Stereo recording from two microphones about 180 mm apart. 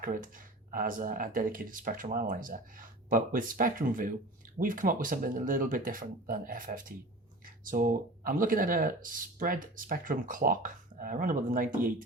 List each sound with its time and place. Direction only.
0.0 s speech: 50° right (ahead or behind)